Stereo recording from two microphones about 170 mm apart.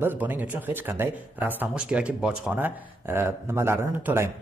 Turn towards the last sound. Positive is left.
turn(degrees=-15)  # may be behind; listen again after turning